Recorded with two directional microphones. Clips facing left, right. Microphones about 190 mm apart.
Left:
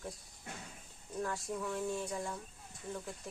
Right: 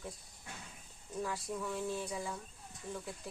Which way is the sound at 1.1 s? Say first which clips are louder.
Left 1 dB; centre (ahead or behind).